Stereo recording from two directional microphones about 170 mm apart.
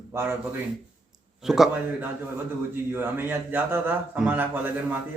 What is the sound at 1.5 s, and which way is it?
Speech, centre (ahead or behind).